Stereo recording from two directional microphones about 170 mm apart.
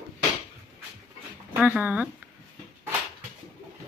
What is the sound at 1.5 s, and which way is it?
Speech, 10° right (ahead or behind).